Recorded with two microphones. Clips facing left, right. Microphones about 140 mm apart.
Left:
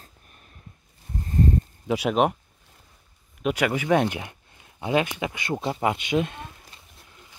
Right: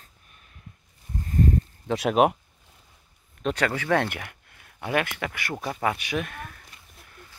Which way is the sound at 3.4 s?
10° left (ahead or behind).